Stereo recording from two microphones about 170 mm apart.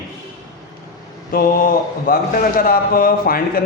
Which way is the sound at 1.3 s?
55° left (ahead or behind).